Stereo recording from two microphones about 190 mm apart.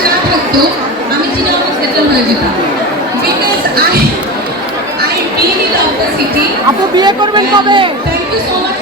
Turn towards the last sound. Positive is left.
turn(degrees=-25)  # may be behind; listen again after turning